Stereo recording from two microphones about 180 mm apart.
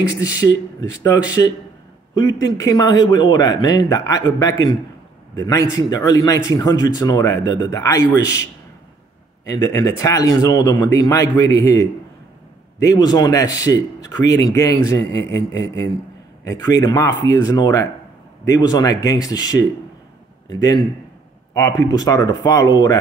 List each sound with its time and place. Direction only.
0.2 s a man's voice: 20° left (ahead or behind)
9.5 s a man's voice: 20° left (ahead or behind)
16.4 s a man's voice: 20° left (ahead or behind)